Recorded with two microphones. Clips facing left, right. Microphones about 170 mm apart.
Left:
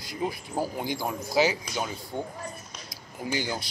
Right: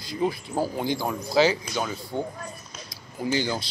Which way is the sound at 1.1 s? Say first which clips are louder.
Right 3 dB; 15° left (ahead or behind).